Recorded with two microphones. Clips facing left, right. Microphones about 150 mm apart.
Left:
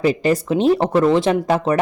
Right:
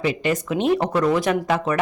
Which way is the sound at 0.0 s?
35° left (ahead or behind).